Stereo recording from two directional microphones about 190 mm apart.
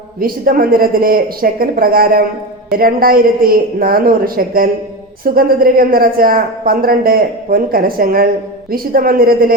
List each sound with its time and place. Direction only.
0.2 s a woman's voice: 50° right (ahead or behind)